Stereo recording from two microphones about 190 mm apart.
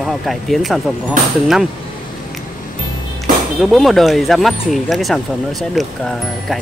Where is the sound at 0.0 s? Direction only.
Centre (ahead or behind).